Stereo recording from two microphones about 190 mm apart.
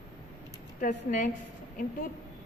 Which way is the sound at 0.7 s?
40° left (ahead or behind).